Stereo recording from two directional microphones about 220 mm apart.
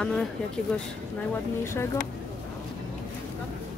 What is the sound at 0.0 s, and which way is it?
Speech, 5° left (ahead or behind).